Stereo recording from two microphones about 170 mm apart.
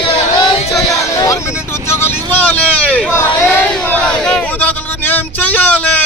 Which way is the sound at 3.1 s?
15° left (ahead or behind).